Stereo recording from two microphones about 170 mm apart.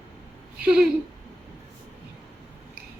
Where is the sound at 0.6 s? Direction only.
5° right (ahead or behind).